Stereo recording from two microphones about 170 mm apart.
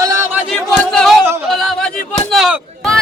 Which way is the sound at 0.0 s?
20° right (ahead or behind).